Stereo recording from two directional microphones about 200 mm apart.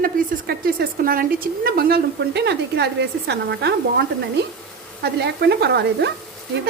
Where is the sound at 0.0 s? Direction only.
50° right (ahead or behind).